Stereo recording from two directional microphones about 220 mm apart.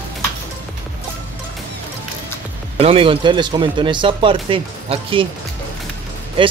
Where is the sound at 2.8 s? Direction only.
25° right (ahead or behind).